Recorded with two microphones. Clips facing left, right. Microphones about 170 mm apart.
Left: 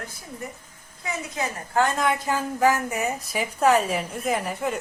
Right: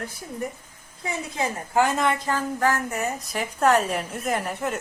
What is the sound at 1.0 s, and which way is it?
Speech, 30° right (ahead or behind).